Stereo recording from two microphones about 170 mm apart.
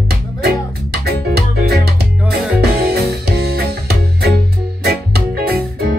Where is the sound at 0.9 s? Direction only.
70° right (ahead or behind).